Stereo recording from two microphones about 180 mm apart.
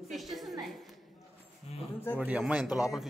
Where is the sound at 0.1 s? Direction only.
Centre (ahead or behind).